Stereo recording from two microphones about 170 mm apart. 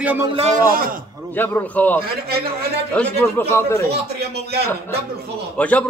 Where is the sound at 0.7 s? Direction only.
55° right (ahead or behind).